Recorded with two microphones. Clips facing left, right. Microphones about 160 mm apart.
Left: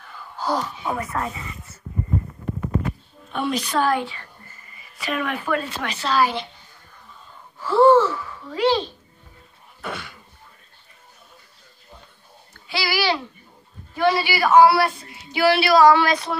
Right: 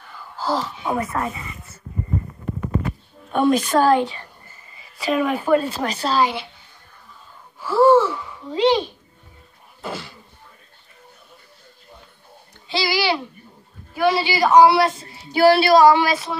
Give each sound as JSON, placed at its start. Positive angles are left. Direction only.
{"t": 0.5, "sound": "speech", "side_deg": -5}
{"t": 0.9, "sound": "a woman's voice", "side_deg": -25}
{"t": 3.3, "sound": "a woman's voice", "side_deg": -50}
{"t": 3.8, "sound": "a woman's voice", "side_deg": -20}
{"t": 6.1, "sound": "speech", "side_deg": -15}
{"t": 7.6, "sound": "speech", "side_deg": -10}
{"t": 9.8, "sound": "speech", "side_deg": -30}
{"t": 12.5, "sound": "a child's voice", "side_deg": -20}
{"t": 15.0, "sound": "speech", "side_deg": -35}
{"t": 15.7, "sound": "speech", "side_deg": -15}
{"t": 16.1, "sound": "speech", "side_deg": 0}